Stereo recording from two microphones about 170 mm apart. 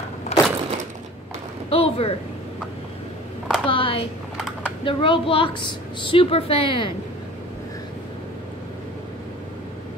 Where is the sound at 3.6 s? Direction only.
30° left (ahead or behind).